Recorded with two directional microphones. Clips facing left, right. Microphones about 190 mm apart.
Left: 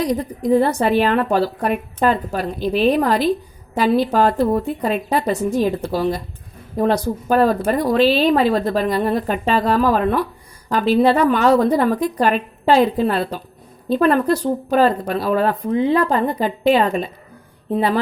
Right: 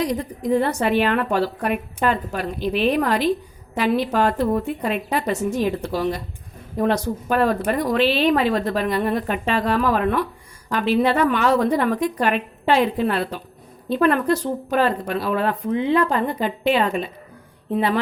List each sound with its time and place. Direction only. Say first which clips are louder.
0.0 s speech: left 3 dB; 35° left (ahead or behind)